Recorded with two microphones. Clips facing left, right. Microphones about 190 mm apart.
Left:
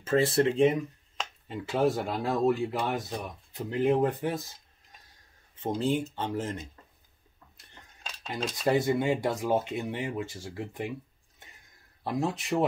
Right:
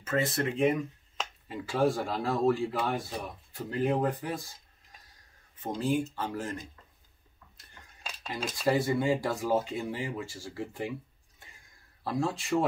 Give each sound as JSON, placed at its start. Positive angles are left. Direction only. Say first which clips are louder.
{"t": 0.0, "sound": "speech", "louder": "left 6 dB", "side_deg": 30}
{"t": 5.6, "sound": "speech", "louder": "left 1 dB", "side_deg": 25}
{"t": 8.7, "sound": "speech", "louder": "left 2 dB", "side_deg": 20}
{"t": 12.0, "sound": "speech", "louder": "left 1 dB", "side_deg": 20}